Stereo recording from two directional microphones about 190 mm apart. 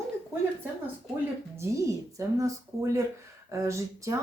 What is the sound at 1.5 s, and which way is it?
Speech, 15° right (ahead or behind).